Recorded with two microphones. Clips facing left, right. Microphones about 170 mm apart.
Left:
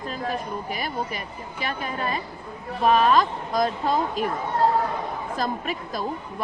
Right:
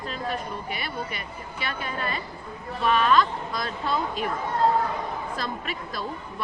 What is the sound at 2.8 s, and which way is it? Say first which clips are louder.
A woman's voice: left 2 dB; 40° left (ahead or behind).